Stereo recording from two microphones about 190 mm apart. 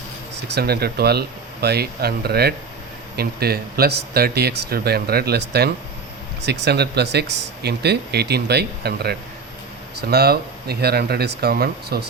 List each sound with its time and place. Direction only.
0.4 s speech: 60° right (ahead or behind)